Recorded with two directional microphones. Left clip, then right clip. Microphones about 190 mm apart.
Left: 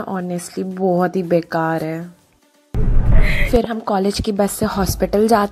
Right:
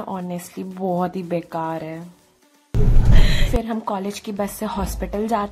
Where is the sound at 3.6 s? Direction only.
25° left (ahead or behind).